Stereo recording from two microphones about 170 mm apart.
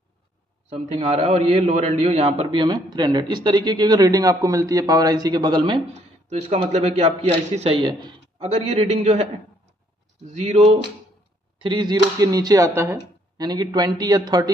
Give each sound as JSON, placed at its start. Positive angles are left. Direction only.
{"t": 0.7, "sound": "a man's voice", "side_deg": -35}
{"t": 11.5, "sound": "speech", "side_deg": -25}